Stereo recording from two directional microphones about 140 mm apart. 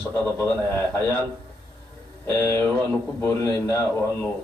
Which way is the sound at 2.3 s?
20° left (ahead or behind).